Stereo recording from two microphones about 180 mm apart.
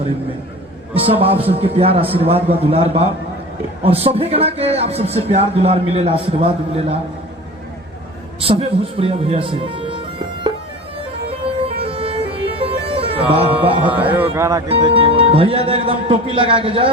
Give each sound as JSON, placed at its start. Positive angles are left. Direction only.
{"t": 0.9, "sound": "speech", "side_deg": -30}
{"t": 8.4, "sound": "speech", "side_deg": -30}
{"t": 11.3, "sound": "music", "side_deg": -30}
{"t": 13.8, "sound": "a sound", "side_deg": -10}
{"t": 14.7, "sound": "speech", "side_deg": -30}